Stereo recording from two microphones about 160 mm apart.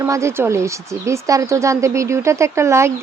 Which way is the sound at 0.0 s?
20° right (ahead or behind).